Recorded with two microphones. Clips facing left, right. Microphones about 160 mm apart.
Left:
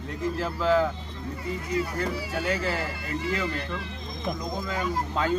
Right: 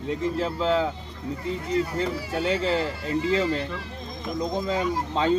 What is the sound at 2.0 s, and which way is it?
Speech, 25° right (ahead or behind).